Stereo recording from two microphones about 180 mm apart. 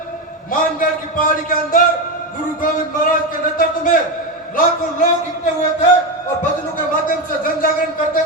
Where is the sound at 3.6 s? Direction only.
50° left (ahead or behind).